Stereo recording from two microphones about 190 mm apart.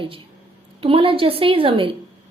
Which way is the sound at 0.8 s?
30° right (ahead or behind).